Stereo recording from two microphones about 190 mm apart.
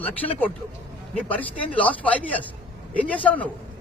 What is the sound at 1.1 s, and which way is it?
A man's voice, 10° left (ahead or behind).